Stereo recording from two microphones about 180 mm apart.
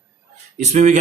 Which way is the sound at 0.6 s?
40° right (ahead or behind).